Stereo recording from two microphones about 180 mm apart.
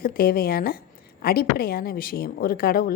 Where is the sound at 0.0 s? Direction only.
55° left (ahead or behind).